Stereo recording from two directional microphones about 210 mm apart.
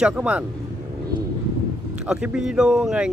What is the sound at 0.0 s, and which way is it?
Speech, 5° right (ahead or behind).